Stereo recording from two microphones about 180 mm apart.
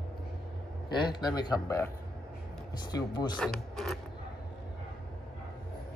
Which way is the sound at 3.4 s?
5° left (ahead or behind).